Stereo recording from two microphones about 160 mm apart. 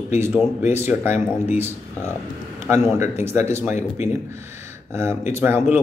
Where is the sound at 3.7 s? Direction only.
45° left (ahead or behind).